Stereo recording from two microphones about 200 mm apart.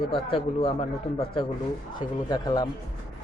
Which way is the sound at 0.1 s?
25° left (ahead or behind).